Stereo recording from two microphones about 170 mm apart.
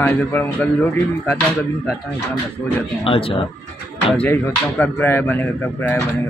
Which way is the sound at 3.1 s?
30° left (ahead or behind).